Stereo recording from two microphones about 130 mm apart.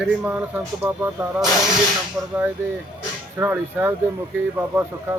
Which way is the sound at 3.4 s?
15° right (ahead or behind).